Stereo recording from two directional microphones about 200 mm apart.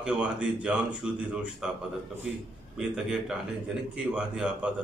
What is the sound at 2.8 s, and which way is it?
Speech, 5° right (ahead or behind).